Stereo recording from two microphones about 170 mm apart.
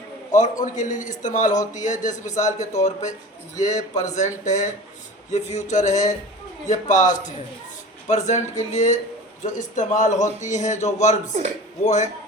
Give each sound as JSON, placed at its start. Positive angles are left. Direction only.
{"t": 0.3, "sound": "a man's voice", "side_deg": 45}